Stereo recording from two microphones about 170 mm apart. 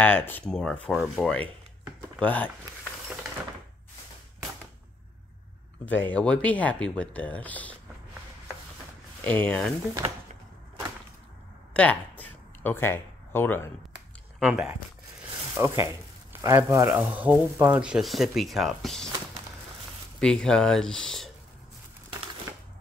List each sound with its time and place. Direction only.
0.0 s speech: 10° left (ahead or behind)
6.0 s speech: 5° left (ahead or behind)
9.2 s speech: 10° left (ahead or behind)
11.7 s a sound: 10° left (ahead or behind)
14.4 s speech: 5° right (ahead or behind)
20.2 s speech: 5° left (ahead or behind)